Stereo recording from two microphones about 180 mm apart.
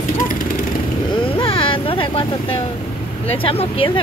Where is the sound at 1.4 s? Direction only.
30° left (ahead or behind).